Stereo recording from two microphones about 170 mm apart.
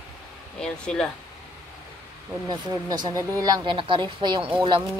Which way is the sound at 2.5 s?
25° right (ahead or behind).